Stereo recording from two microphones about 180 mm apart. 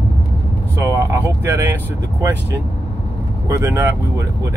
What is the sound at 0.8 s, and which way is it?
Speech, 15° right (ahead or behind).